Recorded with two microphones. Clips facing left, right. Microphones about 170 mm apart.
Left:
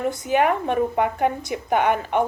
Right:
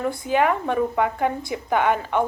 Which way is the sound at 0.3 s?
15° left (ahead or behind).